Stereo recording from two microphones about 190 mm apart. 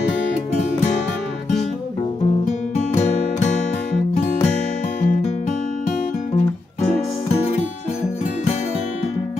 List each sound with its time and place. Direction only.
2.4 s music: 40° left (ahead or behind)
5.0 s music: 40° left (ahead or behind)